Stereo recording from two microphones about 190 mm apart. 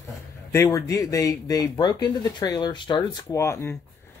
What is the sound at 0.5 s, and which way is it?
Speech, 15° left (ahead or behind).